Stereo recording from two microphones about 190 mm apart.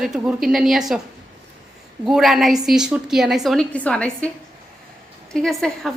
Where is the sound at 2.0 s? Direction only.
Centre (ahead or behind).